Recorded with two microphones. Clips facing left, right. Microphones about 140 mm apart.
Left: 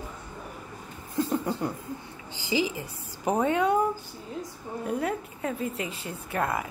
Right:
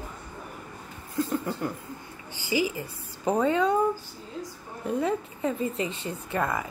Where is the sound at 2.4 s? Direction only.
20° left (ahead or behind).